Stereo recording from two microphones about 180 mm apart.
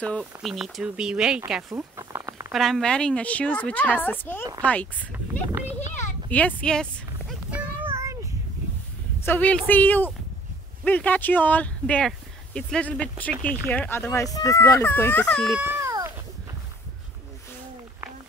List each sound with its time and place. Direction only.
0.0 s speech: centre (ahead or behind)
2.0 s a sound: 15° right (ahead or behind)
2.5 s a woman's voice: centre (ahead or behind)
6.3 s speech: 5° left (ahead or behind)
7.5 s child singing: 15° right (ahead or behind)
9.2 s a woman's voice: 10° left (ahead or behind)
15.6 s cat: 15° right (ahead or behind)